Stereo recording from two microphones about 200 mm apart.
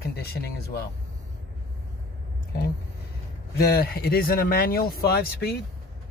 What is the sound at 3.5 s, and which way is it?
Speech, 50° left (ahead or behind).